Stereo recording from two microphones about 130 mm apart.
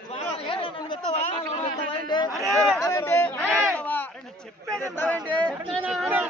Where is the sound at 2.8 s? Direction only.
25° left (ahead or behind).